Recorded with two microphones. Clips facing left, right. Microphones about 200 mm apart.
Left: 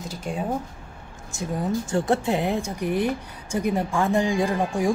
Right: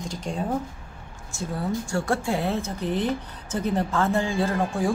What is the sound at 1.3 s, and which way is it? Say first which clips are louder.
Speech: left 2 dB; 20° left (ahead or behind).